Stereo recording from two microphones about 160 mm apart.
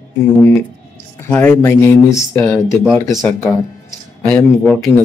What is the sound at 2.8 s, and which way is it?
Speech, centre (ahead or behind).